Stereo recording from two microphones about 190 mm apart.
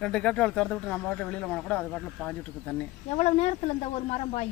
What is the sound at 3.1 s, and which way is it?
Speech, 35° left (ahead or behind).